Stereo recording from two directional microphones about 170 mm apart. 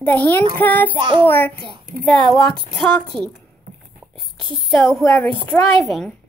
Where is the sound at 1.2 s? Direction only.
10° left (ahead or behind).